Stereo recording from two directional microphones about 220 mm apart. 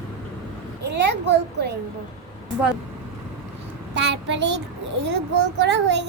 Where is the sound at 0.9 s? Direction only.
50° right (ahead or behind).